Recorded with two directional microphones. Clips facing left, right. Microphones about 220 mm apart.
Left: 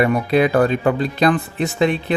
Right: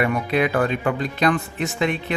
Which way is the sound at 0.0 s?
35° left (ahead or behind).